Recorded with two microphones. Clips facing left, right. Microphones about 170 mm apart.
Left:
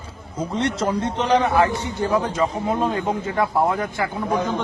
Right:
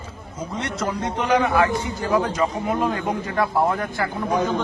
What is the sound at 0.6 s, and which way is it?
A man's voice, 30° left (ahead or behind).